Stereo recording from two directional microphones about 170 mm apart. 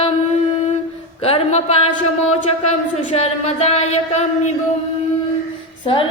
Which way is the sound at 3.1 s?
40° left (ahead or behind).